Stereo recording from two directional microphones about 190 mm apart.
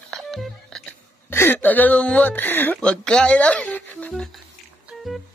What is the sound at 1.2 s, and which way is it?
A woman's voice, 10° left (ahead or behind).